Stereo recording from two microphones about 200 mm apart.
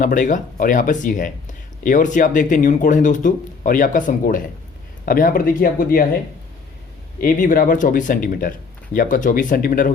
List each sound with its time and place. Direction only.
0.0 s speech: 40° left (ahead or behind)
7.2 s speech: 45° left (ahead or behind)